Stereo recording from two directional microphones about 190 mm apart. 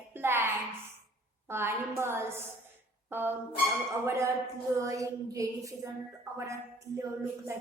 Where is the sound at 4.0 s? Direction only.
15° right (ahead or behind).